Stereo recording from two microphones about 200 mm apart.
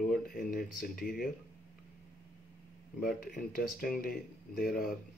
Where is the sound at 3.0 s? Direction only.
45° left (ahead or behind).